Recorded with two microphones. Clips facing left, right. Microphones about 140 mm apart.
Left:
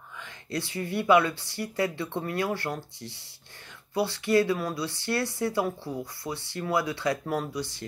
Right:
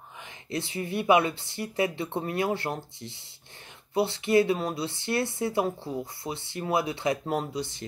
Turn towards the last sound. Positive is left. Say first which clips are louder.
# right 1 dB
turn(degrees=-25)  # may be behind; listen again after turning